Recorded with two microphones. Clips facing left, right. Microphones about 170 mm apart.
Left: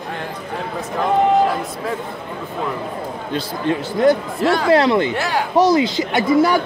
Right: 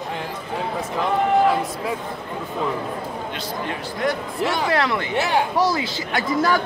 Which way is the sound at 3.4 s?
30° left (ahead or behind).